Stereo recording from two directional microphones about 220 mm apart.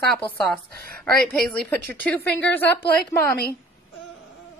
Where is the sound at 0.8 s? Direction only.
45° right (ahead or behind).